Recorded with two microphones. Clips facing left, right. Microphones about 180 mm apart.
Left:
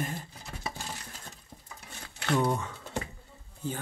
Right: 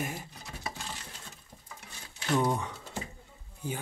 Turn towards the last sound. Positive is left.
turn(degrees=-15)  # may be behind; listen again after turning